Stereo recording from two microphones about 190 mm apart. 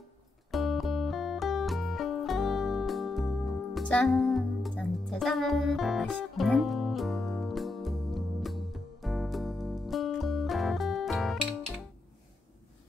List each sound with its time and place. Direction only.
0.5 s music: centre (ahead or behind)